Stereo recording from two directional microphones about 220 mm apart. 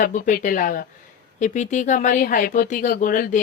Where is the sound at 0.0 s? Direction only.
35° left (ahead or behind).